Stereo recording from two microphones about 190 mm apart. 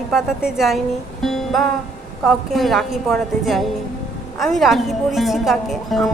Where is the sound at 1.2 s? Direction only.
Centre (ahead or behind).